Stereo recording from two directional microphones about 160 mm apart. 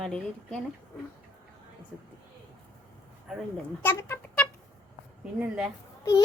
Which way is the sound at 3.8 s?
15° left (ahead or behind).